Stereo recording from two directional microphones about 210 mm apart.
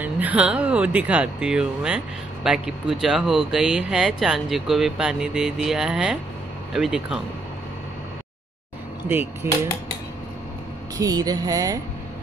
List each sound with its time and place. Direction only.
0.0 s speech: 5° right (ahead or behind)
9.1 s speech: 10° right (ahead or behind)
11.0 s speech: 15° right (ahead or behind)